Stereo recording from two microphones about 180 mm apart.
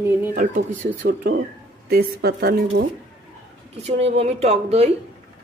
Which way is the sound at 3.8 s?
35° right (ahead or behind).